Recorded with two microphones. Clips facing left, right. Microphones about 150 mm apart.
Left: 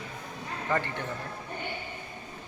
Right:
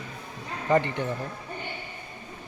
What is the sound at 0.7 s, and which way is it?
Speech, 20° right (ahead or behind).